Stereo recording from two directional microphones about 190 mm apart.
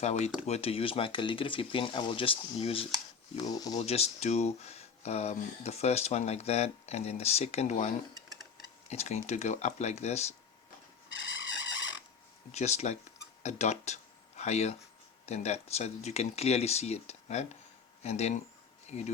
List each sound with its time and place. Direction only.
0.0 s speech: 35° left (ahead or behind)
3.5 s speech: 20° left (ahead or behind)
3.8 s speech: 35° left (ahead or behind)
12.5 s speech: 35° left (ahead or behind)